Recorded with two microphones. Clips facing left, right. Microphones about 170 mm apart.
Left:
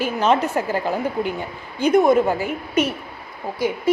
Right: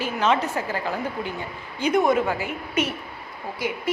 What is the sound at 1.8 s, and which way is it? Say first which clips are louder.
A woman's voice: left 5 dB; 45° left (ahead or behind).